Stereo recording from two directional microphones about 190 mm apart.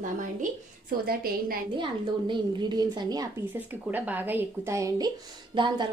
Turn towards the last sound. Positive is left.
turn(degrees=-25)  # may be behind; listen again after turning